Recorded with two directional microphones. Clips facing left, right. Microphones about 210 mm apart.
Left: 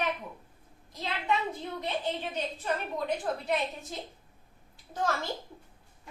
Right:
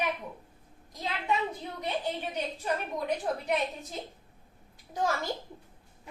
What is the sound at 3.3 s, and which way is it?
Speech, 15° right (ahead or behind).